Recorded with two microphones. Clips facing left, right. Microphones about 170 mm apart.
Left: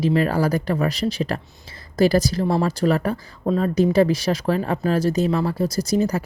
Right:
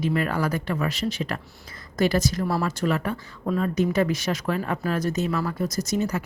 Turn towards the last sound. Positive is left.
turn(degrees=35)  # may be behind; listen again after turning